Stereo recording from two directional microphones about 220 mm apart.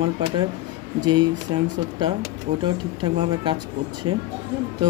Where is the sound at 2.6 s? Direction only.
20° right (ahead or behind).